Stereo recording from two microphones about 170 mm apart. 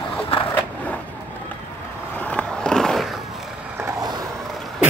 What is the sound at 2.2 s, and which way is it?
Skateboard, 5° left (ahead or behind).